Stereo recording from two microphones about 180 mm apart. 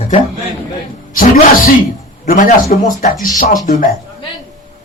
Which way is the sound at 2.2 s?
50° left (ahead or behind).